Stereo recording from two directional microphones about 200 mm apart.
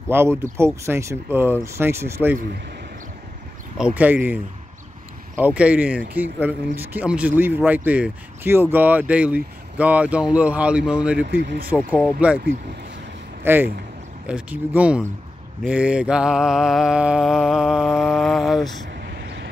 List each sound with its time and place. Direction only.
0.1 s speech: 10° right (ahead or behind)
3.7 s speech: 5° right (ahead or behind)
11.2 s speech: 50° right (ahead or behind)
11.9 s mantra: 5° right (ahead or behind)
13.4 s speech: 10° right (ahead or behind)
14.2 s mantra: 5° right (ahead or behind)